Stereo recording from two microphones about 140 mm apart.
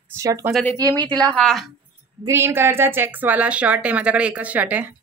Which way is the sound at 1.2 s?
5° left (ahead or behind).